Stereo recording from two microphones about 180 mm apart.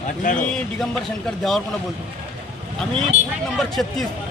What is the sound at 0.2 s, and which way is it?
Speech, 45° left (ahead or behind).